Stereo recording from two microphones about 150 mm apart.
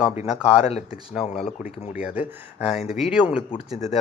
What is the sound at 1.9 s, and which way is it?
A man's voice, 10° right (ahead or behind).